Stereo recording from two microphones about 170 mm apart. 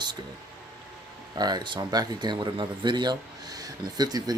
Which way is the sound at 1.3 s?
25° right (ahead or behind).